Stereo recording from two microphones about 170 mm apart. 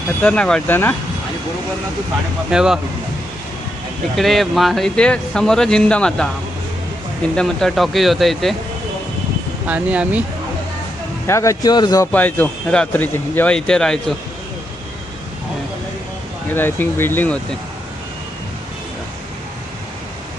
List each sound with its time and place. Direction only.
0.2 s speech: 5° left (ahead or behind)
2.5 s speech: 5° right (ahead or behind)
4.1 s speech: centre (ahead or behind)
7.3 s speech: centre (ahead or behind)
9.6 s speech: 10° right (ahead or behind)
11.3 s a man's voice: 15° left (ahead or behind)
12.1 s speech: 10° left (ahead or behind)
16.5 s speech: 10° left (ahead or behind)